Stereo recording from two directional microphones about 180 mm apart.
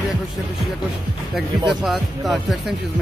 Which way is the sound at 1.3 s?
Centre (ahead or behind).